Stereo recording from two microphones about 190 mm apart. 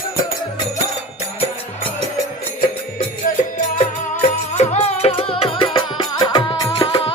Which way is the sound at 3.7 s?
40° left (ahead or behind).